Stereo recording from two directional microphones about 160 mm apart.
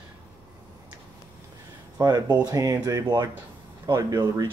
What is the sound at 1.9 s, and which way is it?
Speech, 25° right (ahead or behind).